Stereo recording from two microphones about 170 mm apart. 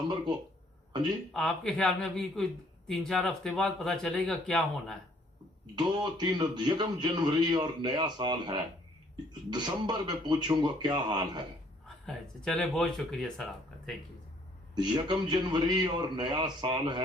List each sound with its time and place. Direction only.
1.3 s speech: 5° left (ahead or behind)
5.7 s a man's voice: 25° right (ahead or behind)
12.0 s speech: 5° left (ahead or behind)
14.8 s a man's voice: 25° right (ahead or behind)